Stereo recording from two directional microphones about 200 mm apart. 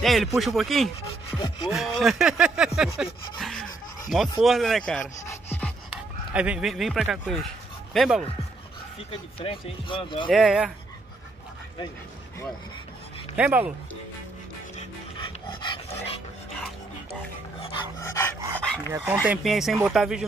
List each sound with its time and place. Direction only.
0.0 s speech: centre (ahead or behind)
5.3 s pant: 10° left (ahead or behind)
5.9 s speech: 5° right (ahead or behind)
9.1 s speech: 25° left (ahead or behind)
10.3 s speech: 5° right (ahead or behind)
13.4 s speech: 10° right (ahead or behind)
14.8 s dog: 25° left (ahead or behind)
18.4 s dog: 15° right (ahead or behind)
19.2 s speech: 5° right (ahead or behind)